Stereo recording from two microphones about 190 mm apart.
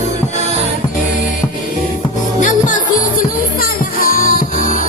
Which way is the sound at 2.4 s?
45° left (ahead or behind).